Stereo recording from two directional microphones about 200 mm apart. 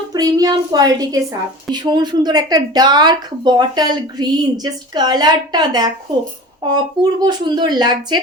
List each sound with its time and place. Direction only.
0.1 s a woman's voice: 20° right (ahead or behind)